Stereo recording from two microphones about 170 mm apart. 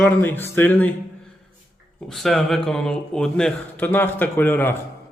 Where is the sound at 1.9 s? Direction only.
Centre (ahead or behind).